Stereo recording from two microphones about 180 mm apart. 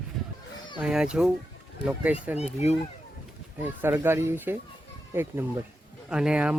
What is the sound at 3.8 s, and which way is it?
Speech, 10° right (ahead or behind).